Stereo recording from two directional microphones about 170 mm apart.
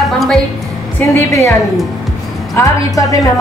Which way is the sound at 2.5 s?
20° left (ahead or behind).